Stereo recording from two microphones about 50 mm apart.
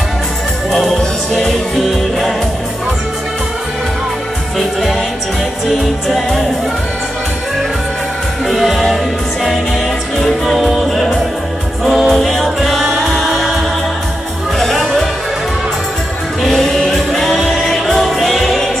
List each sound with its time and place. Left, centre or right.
0.7 s music: centre
5.7 s music: centre
8.5 s music: centre
10.6 s music: centre
13.3 s a capella: centre
16.4 s music: centre